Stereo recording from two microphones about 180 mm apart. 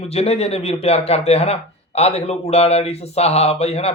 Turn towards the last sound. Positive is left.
turn(degrees=35)  # may be behind; listen again after turning